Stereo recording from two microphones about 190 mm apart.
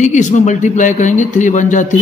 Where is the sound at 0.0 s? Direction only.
40° left (ahead or behind).